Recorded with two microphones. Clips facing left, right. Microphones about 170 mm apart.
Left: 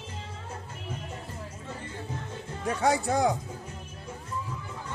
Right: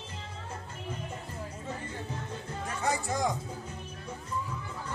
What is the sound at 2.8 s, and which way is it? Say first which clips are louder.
Speech: left 6 dB; 75° left (ahead or behind).